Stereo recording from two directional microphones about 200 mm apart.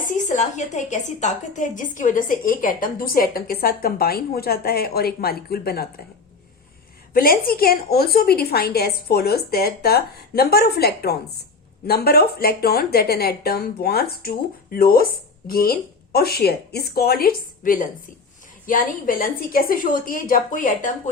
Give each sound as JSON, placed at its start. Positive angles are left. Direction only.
{"t": 0.1, "sound": "speech", "side_deg": 40}
{"t": 7.1, "sound": "speech", "side_deg": 50}